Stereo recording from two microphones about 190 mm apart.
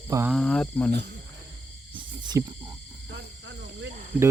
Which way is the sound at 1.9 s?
20° right (ahead or behind).